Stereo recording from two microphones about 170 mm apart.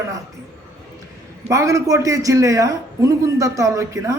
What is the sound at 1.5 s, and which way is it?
A man's voice, 20° right (ahead or behind).